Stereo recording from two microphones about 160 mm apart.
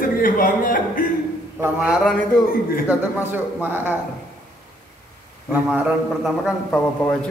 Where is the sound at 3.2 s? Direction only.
15° right (ahead or behind).